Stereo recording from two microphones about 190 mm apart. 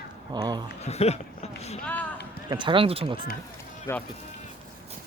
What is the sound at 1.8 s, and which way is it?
Speech, 10° left (ahead or behind).